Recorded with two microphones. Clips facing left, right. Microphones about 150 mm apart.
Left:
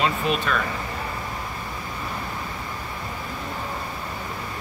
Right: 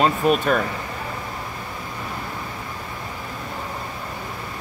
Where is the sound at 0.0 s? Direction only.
45° right (ahead or behind).